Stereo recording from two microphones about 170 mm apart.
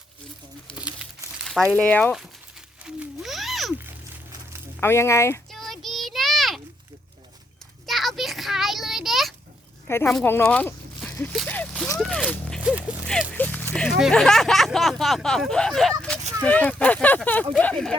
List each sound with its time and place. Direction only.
1.0 s crumpling: 5° right (ahead or behind)
1.7 s speech: 5° left (ahead or behind)
2.8 s music: 5° right (ahead or behind)
4.8 s speech: 15° left (ahead or behind)
5.5 s a sound: centre (ahead or behind)
7.9 s a sound: centre (ahead or behind)
9.8 s speech: 15° left (ahead or behind)
10.2 s a sound: 10° left (ahead or behind)
11.9 s zipper: 5° left (ahead or behind)
13.3 s horse: 10° left (ahead or behind)
14.0 s speech: 5° left (ahead or behind)